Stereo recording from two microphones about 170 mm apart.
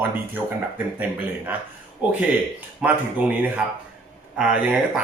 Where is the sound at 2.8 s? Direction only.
10° right (ahead or behind).